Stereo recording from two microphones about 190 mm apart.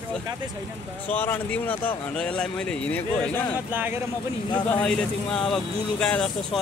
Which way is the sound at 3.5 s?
10° right (ahead or behind).